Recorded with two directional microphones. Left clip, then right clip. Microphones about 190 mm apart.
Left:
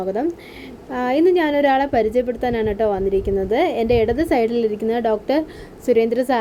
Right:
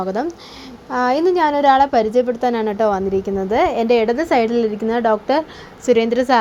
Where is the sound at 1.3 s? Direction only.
5° right (ahead or behind).